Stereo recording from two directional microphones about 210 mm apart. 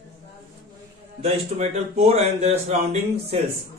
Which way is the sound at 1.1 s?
30° right (ahead or behind).